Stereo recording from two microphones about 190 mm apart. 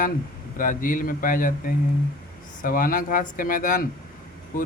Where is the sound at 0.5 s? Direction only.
45° left (ahead or behind).